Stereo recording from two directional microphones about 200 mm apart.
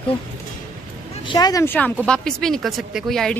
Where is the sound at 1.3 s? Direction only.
20° left (ahead or behind).